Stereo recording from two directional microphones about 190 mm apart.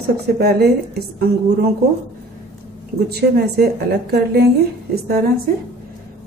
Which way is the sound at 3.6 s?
55° right (ahead or behind).